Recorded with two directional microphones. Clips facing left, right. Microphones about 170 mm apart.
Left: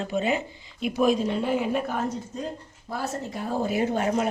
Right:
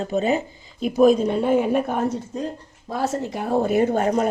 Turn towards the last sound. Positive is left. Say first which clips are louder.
# right 5 dB
turn(degrees=-45)  # may be behind; listen again after turning